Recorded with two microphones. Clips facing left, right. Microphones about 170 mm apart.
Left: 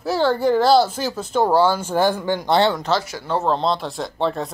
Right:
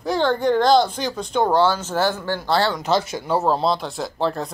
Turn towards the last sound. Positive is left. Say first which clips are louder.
# left 1 dB
turn(degrees=0)  # may be behind; listen again after turning